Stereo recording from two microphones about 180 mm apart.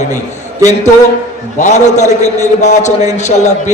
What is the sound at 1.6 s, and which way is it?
A man's voice, 40° left (ahead or behind).